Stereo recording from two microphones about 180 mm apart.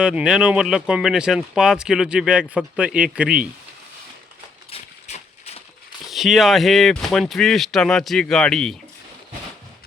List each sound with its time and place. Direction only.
0.0 s speech: 5° right (ahead or behind)
4.7 s a sound: 35° left (ahead or behind)
6.1 s speech: centre (ahead or behind)